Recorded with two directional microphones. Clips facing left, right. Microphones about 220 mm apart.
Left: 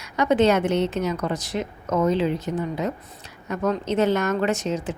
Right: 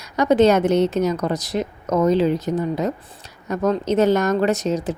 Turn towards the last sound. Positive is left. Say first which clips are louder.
# right 4 dB
turn(degrees=-40)  # may be behind; listen again after turning